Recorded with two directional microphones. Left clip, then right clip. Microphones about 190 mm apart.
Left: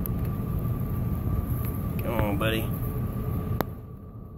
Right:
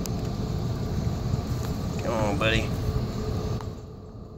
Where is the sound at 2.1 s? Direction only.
Centre (ahead or behind).